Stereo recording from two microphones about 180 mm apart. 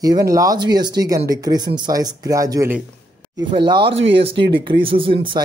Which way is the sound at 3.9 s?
90° right.